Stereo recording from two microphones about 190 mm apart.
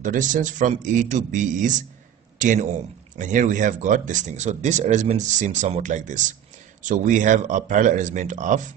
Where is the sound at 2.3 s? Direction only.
40° right (ahead or behind).